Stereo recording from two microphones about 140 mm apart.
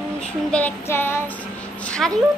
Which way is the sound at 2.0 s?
Centre (ahead or behind).